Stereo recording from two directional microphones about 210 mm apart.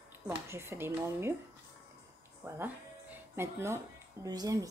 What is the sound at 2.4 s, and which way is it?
Speech, 10° right (ahead or behind).